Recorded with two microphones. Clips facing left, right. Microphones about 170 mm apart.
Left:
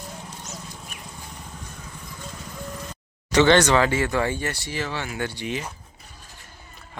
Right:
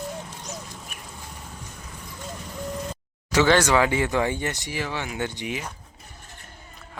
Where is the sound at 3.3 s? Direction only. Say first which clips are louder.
Left 2 dB; 5° right (ahead or behind).